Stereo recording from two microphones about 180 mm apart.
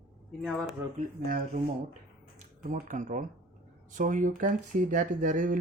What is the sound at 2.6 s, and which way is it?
Speech, 45° right (ahead or behind).